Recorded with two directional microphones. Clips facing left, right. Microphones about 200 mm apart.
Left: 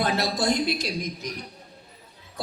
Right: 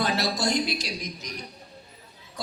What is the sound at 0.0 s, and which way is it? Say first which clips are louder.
A man's voice: left 1 dB; 55° left (ahead or behind).